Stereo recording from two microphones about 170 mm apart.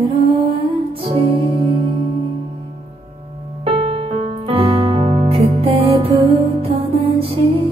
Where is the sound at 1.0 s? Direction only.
35° right (ahead or behind).